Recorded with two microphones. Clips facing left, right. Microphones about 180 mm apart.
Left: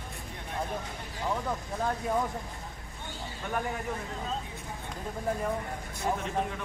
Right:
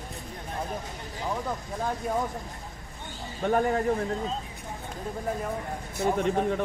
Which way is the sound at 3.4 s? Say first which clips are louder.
Right 9 dB; 50° right (ahead or behind).